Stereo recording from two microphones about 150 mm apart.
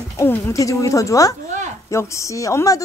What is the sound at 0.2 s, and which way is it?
Speech, 20° left (ahead or behind).